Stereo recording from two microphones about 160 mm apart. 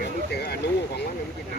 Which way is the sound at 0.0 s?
90° left.